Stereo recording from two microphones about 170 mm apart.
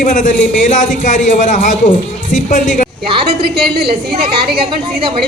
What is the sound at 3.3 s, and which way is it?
Speech, 70° right (ahead or behind).